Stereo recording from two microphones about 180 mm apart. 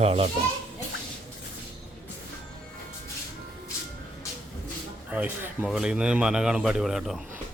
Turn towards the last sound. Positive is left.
turn(degrees=0)  # may be behind; listen again after turning